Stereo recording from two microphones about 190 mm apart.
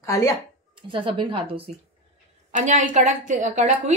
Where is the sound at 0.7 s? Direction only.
25° right (ahead or behind).